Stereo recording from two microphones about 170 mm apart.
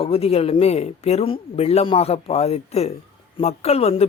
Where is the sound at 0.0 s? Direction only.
35° left (ahead or behind).